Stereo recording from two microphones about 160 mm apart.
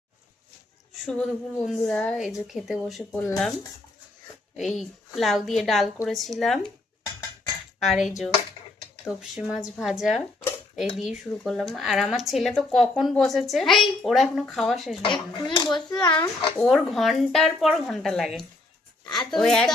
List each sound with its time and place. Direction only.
1.0 s speech: 5° left (ahead or behind)
4.8 s speech: centre (ahead or behind)
6.6 s dishes: 25° left (ahead or behind)
7.8 s speech: centre (ahead or behind)
15.0 s a child's voice: 30° left (ahead or behind)
16.6 s speech: centre (ahead or behind)
19.3 s speech: 5° left (ahead or behind)